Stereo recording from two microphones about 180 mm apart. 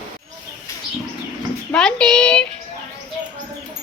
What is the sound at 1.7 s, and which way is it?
Speech, 5° left (ahead or behind).